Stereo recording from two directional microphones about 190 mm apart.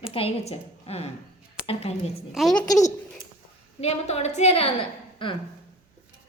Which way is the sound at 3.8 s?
35° left (ahead or behind).